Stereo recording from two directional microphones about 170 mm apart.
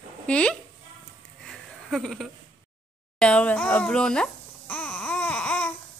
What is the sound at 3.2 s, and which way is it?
Babbling, 5° left (ahead or behind).